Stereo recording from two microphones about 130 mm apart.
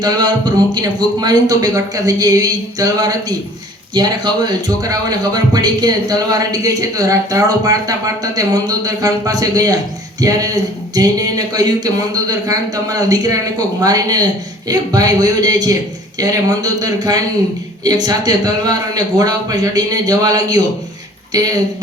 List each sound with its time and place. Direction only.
0.0 s a man's voice: 35° right (ahead or behind)